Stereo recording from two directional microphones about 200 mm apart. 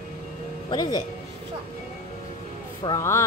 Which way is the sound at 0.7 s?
20° left (ahead or behind).